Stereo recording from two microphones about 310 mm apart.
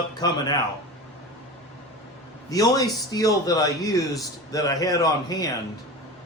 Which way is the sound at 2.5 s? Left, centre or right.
Centre.